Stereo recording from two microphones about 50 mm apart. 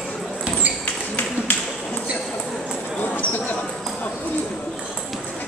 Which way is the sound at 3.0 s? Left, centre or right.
Left.